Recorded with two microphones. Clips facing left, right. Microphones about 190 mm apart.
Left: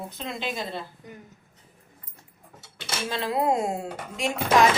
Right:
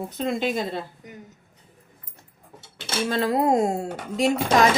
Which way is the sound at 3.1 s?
45° right (ahead or behind).